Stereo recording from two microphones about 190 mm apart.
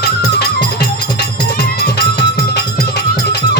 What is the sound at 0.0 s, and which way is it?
Music, 60° left (ahead or behind).